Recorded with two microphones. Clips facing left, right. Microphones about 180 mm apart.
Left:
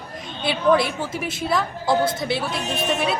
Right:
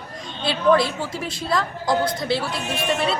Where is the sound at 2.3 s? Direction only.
20° left (ahead or behind).